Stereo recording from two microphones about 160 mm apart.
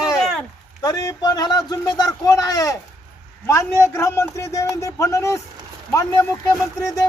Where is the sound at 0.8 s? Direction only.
25° left (ahead or behind).